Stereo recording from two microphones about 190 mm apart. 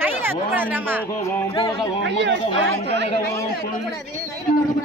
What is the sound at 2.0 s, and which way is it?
Speech, 65° right (ahead or behind).